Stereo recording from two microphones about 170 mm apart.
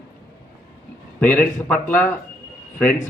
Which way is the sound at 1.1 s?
5° left (ahead or behind).